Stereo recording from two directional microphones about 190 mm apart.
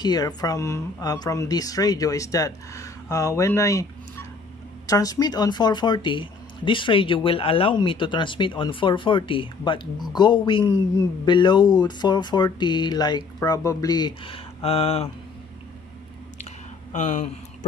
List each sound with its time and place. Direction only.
0.0 s speech: 20° left (ahead or behind)
4.8 s speech: 20° left (ahead or behind)
16.9 s speech: 40° left (ahead or behind)